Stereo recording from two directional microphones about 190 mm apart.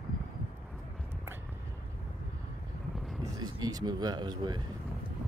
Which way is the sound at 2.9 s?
Centre (ahead or behind).